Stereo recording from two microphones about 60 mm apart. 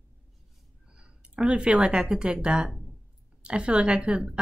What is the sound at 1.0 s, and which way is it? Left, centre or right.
A woman's voice, centre.